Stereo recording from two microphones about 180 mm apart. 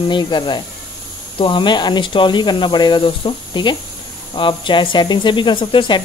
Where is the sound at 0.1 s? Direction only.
25° left (ahead or behind).